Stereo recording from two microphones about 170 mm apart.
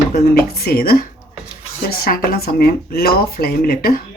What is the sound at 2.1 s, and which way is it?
Speech, 60° left (ahead or behind).